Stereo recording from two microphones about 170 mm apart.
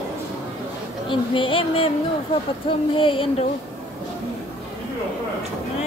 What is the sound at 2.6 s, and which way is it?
Speech, 30° left (ahead or behind).